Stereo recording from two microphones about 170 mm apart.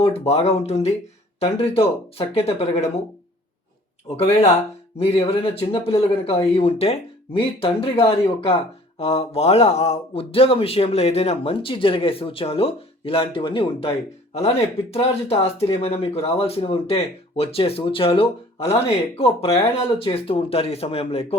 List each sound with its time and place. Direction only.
0.0 s speech: 35° left (ahead or behind)
4.1 s speech: 40° left (ahead or behind)
14.9 s speech: 35° left (ahead or behind)